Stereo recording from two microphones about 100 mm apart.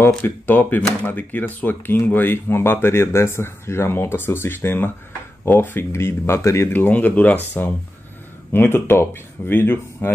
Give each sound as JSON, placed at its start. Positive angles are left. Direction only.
{"t": 0.2, "sound": "speech", "side_deg": 20}